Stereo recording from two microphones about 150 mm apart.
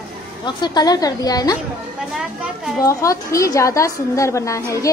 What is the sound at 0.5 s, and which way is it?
A woman's voice, 30° left (ahead or behind).